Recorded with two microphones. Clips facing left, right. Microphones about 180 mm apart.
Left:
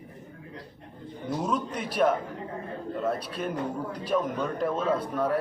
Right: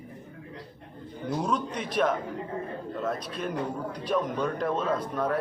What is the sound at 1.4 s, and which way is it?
A man's voice, 5° left (ahead or behind).